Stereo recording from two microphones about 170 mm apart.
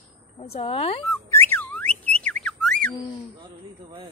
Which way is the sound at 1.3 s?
10° left (ahead or behind).